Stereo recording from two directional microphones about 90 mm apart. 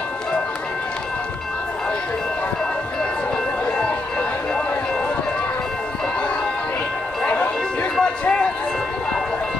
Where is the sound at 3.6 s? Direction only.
10° left (ahead or behind).